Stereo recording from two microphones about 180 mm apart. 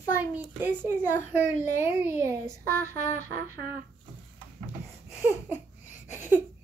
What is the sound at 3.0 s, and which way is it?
Music, 40° left (ahead or behind).